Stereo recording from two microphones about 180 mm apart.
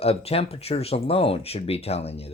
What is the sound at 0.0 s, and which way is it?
Speech, 35° left (ahead or behind).